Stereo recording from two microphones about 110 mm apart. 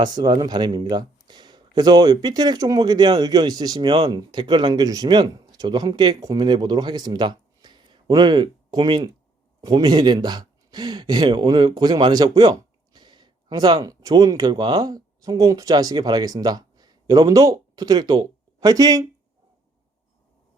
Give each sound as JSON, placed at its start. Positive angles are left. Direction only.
{"t": 0.0, "sound": "speech", "side_deg": -40}